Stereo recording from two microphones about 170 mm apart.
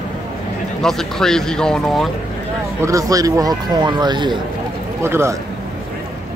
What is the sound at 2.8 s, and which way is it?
Speech, 20° right (ahead or behind).